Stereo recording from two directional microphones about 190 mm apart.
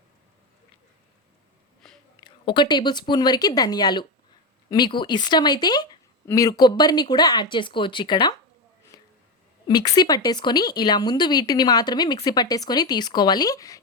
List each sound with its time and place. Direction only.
1.8 s whispering: centre (ahead or behind)
2.2 s speech: 25° left (ahead or behind)
8.9 s a sound: 20° left (ahead or behind)
9.6 s speech: 20° left (ahead or behind)